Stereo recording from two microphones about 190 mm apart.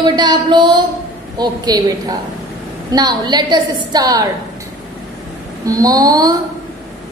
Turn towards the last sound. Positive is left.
turn(degrees=-20)  # may be behind; listen again after turning